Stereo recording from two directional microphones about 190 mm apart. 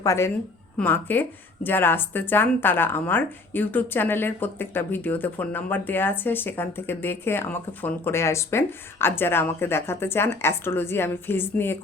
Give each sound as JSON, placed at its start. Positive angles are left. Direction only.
{"t": 0.0, "sound": "a woman's voice", "side_deg": 15}